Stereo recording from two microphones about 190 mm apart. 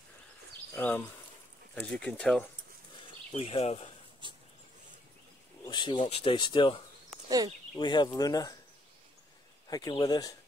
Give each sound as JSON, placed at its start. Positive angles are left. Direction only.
{"t": 0.7, "sound": "speech", "side_deg": 10}
{"t": 3.3, "sound": "speech", "side_deg": 30}
{"t": 4.2, "sound": "dog", "side_deg": -25}
{"t": 5.7, "sound": "speech", "side_deg": 25}
{"t": 7.2, "sound": "speech", "side_deg": -20}
{"t": 7.7, "sound": "speech", "side_deg": 25}
{"t": 9.7, "sound": "speech", "side_deg": 20}